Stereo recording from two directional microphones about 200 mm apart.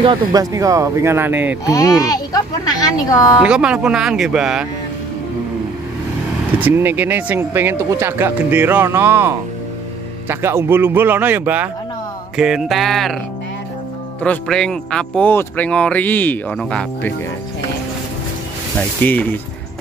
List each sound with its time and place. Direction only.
0.0 s speech: 20° right (ahead or behind)
1.7 s speech: 15° left (ahead or behind)
3.3 s speech: 5° right (ahead or behind)
6.6 s speech: 10° right (ahead or behind)
14.2 s speech: 5° left (ahead or behind)
18.8 s speech: 10° left (ahead or behind)